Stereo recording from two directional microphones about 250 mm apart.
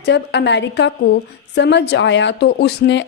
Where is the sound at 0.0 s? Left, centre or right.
Left.